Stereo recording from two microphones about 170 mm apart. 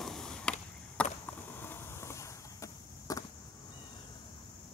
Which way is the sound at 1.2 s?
10° left (ahead or behind).